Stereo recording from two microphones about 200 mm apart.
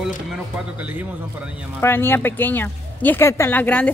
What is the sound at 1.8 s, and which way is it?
Speech, 10° left (ahead or behind).